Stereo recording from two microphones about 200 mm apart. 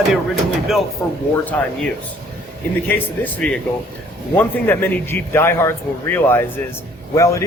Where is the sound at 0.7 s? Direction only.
Centre (ahead or behind).